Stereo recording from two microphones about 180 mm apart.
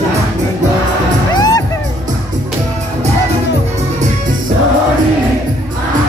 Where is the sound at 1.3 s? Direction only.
20° left (ahead or behind).